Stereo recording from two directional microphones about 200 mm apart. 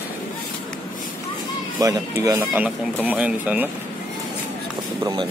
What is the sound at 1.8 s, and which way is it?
Speech, 15° right (ahead or behind).